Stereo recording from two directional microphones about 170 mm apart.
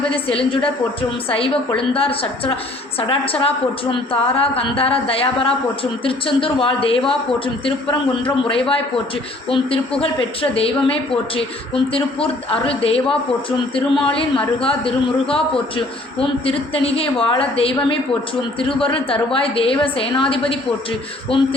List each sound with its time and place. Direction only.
0.1 s a woman's voice: 30° left (ahead or behind)